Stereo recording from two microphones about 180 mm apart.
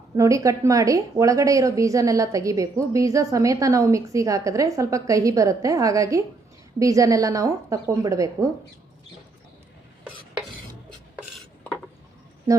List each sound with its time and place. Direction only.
0.2 s a woman's voice: 15° right (ahead or behind)